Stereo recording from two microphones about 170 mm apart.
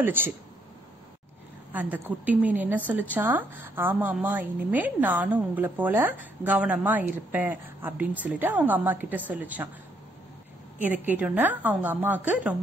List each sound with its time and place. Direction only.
0.0 s a woman's voice: 10° right (ahead or behind)
1.7 s a woman's voice: 10° right (ahead or behind)
10.8 s a woman's voice: 10° right (ahead or behind)